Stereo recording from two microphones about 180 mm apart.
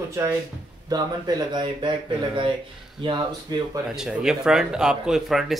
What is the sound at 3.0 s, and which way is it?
Speech, 25° right (ahead or behind).